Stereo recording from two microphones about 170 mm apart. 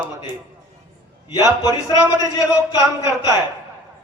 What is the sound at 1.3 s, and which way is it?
Speech, 20° left (ahead or behind).